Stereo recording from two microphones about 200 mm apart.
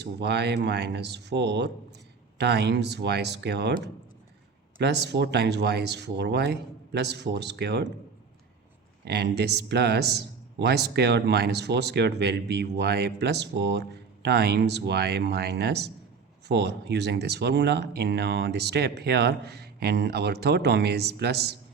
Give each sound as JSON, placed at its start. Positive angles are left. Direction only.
{"t": 0.0, "sound": "a man's voice", "side_deg": -55}
{"t": 4.8, "sound": "a man's voice", "side_deg": -60}
{"t": 9.0, "sound": "a man's voice", "side_deg": -55}